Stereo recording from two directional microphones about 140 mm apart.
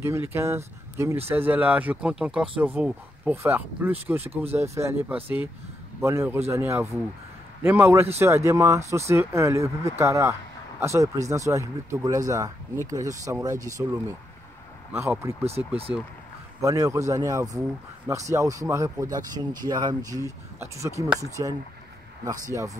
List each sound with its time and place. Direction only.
0.0 s speech: 20° right (ahead or behind)
4.3 s speech: 45° right (ahead or behind)
4.6 s speech: 20° right (ahead or behind)